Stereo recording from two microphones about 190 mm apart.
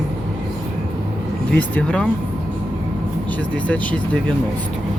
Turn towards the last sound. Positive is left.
turn(degrees=5)  # may be behind; listen again after turning